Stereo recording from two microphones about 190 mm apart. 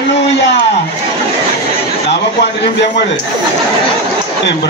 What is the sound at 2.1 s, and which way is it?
Speech, 65° left (ahead or behind).